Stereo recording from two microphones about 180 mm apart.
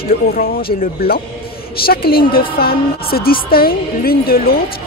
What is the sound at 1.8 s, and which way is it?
Speech, 55° left (ahead or behind).